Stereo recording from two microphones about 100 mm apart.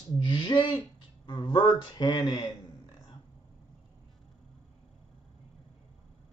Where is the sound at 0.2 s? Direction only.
55° left (ahead or behind).